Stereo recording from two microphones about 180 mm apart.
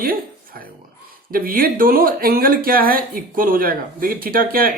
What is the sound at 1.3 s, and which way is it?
Speech, 55° right (ahead or behind).